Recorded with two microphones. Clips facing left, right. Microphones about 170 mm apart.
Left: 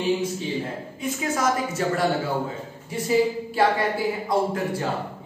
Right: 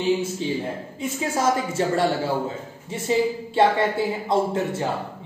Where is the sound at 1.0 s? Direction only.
30° right (ahead or behind).